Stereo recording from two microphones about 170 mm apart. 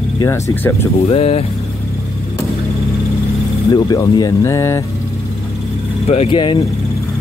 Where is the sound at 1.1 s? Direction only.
40° left (ahead or behind).